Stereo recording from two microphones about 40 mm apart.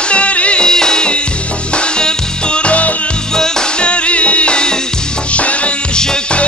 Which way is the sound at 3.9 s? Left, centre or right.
Left.